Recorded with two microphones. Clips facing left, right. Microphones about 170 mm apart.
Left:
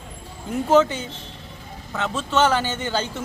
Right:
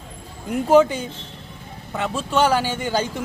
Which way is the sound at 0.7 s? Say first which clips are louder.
Right 3 dB; 10° right (ahead or behind).